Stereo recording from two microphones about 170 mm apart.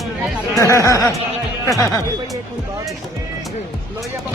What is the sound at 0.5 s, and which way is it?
Speech, 15° left (ahead or behind).